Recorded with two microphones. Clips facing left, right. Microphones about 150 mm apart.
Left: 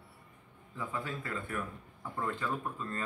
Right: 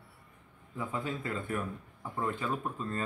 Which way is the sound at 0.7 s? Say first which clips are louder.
Right 3 dB; 20° right (ahead or behind).